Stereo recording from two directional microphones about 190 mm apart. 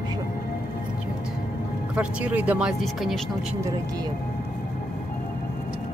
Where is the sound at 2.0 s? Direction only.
5° right (ahead or behind).